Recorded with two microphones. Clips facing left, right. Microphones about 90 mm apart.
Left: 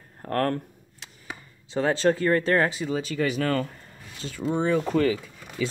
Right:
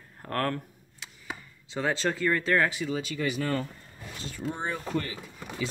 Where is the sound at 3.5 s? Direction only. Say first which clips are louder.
Left 4 dB; 75° left (ahead or behind).